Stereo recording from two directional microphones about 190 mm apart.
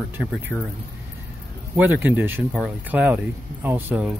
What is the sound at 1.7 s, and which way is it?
Speech, 10° right (ahead or behind).